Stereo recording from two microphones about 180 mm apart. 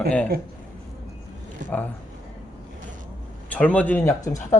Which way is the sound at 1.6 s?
45° right (ahead or behind).